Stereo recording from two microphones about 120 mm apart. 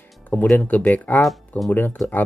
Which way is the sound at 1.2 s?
Centre (ahead or behind).